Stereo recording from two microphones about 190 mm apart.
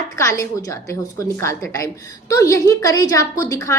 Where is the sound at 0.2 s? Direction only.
15° left (ahead or behind).